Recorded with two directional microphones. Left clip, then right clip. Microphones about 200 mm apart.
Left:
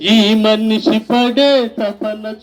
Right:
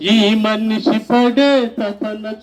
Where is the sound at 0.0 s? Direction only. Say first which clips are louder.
Left 2 dB; 40° left (ahead or behind).